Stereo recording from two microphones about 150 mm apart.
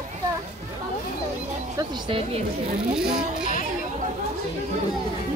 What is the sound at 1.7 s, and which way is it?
Speech, 30° right (ahead or behind).